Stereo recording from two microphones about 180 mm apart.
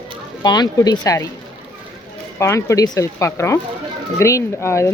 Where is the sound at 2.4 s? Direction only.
15° left (ahead or behind).